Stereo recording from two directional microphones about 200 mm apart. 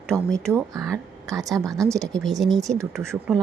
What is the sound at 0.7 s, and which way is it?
A woman's voice, 15° right (ahead or behind).